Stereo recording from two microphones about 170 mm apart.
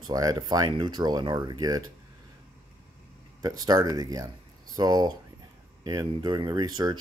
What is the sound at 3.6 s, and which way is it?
Speech, 20° right (ahead or behind).